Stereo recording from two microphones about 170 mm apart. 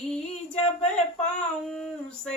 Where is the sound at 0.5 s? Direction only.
40° left (ahead or behind).